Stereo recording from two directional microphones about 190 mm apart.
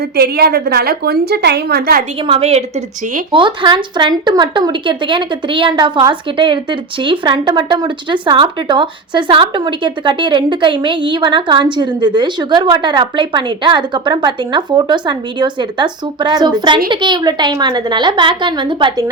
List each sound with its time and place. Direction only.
0.2 s a woman's voice: 55° right (ahead or behind)
2.2 s a woman's voice: 30° right (ahead or behind)